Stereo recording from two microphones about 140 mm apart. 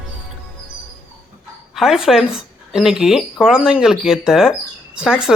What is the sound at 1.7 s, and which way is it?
Speech, centre (ahead or behind).